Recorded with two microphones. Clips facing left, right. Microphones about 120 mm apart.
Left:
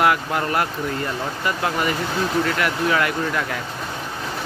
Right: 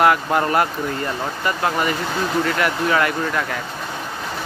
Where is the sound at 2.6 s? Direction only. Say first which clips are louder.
Right 2 dB; centre (ahead or behind).